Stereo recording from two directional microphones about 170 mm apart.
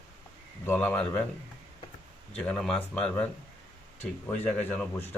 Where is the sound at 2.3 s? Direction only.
5° left (ahead or behind).